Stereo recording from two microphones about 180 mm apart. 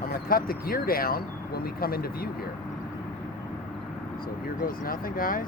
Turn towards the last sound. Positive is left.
turn(degrees=50)  # may be behind; listen again after turning